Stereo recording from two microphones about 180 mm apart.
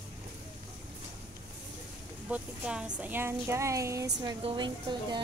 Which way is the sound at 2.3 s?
5° right (ahead or behind).